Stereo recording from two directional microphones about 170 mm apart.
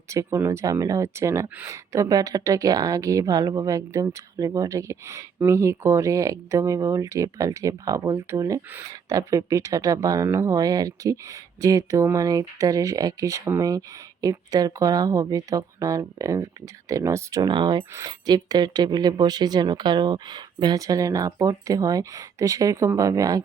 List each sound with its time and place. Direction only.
0.1 s speech: 15° right (ahead or behind)